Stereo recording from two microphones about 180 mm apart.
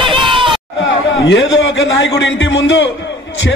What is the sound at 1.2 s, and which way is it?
A man's voice, 85° left.